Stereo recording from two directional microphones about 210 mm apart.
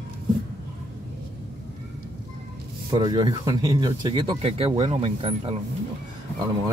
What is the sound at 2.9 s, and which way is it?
Speech, 20° right (ahead or behind).